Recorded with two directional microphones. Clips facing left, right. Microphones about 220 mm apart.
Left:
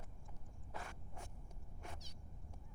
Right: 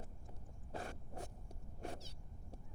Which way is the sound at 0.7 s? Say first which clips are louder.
Right 5 dB; 35° right (ahead or behind).